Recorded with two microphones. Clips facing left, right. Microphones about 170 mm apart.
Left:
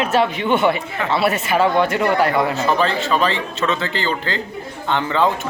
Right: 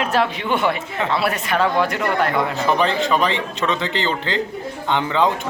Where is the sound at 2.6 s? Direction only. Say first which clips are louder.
Even; 15° right (ahead or behind).